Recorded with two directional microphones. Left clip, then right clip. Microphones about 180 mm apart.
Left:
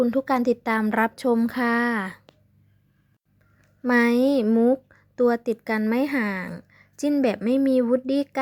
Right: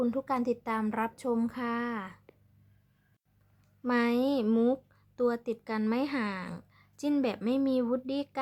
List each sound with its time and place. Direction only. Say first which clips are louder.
0.1 s a woman's voice: left 9 dB; 25° left (ahead or behind)
3.8 s a woman's voice: left 8 dB; 25° left (ahead or behind)
4.4 s speech: left 8 dB; 10° left (ahead or behind)
4.9 s a woman's voice: left 9 dB; 25° left (ahead or behind)
6.5 s a sound: left 6 dB; 15° left (ahead or behind)
7.2 s a woman's voice: left 9 dB; 20° left (ahead or behind)